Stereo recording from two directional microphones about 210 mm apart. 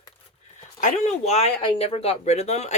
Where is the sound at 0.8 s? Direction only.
35° left (ahead or behind).